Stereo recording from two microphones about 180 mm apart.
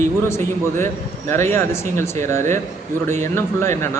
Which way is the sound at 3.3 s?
15° left (ahead or behind).